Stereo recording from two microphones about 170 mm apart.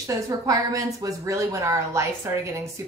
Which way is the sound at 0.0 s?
20° right (ahead or behind).